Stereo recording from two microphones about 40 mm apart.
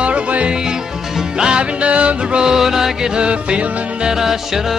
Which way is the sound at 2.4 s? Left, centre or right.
Centre.